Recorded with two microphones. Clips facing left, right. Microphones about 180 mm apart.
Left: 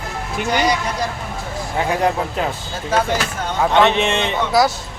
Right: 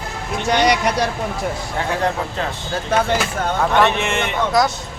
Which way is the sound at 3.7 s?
20° left (ahead or behind).